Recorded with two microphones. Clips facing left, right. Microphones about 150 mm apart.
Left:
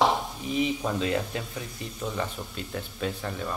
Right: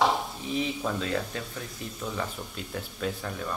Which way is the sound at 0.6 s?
10° left (ahead or behind).